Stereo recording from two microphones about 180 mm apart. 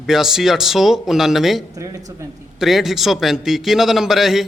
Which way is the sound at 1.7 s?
20° right (ahead or behind).